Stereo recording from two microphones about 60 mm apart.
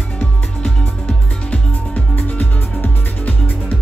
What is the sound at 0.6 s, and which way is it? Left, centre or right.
Music, centre.